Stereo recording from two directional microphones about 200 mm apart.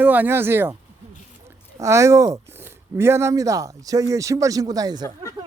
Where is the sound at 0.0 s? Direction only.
10° right (ahead or behind).